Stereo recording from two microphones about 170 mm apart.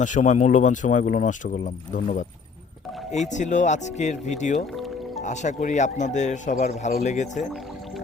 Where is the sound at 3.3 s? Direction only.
45° left (ahead or behind).